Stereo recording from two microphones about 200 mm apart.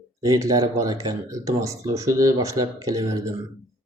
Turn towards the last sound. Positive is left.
turn(degrees=-15)  # may be behind; listen again after turning